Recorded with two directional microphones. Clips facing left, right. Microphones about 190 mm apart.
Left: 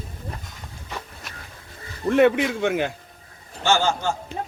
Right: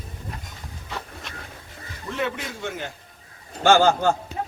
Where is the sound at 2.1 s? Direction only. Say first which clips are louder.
Left 12 dB; 60° left (ahead or behind).